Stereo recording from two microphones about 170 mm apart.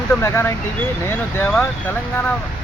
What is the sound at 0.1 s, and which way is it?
Speech, 15° left (ahead or behind).